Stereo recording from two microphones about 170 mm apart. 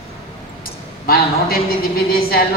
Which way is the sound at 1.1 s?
65° left (ahead or behind).